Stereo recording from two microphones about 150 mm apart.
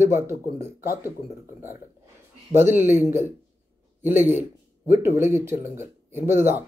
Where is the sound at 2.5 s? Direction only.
15° right (ahead or behind).